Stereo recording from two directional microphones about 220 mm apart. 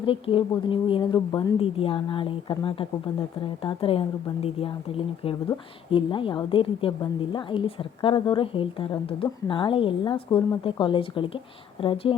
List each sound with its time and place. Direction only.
0.0 s a woman's voice: 25° left (ahead or behind)